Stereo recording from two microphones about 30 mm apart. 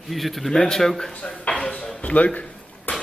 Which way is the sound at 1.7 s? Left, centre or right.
Left.